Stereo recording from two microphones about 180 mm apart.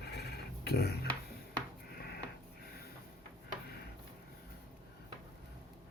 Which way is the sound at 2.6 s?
60° left (ahead or behind).